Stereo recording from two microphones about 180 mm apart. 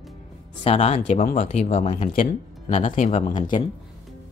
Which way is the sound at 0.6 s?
35° left (ahead or behind).